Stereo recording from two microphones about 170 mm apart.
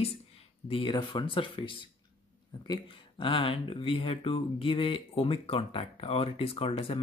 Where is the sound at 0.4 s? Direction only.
35° left (ahead or behind).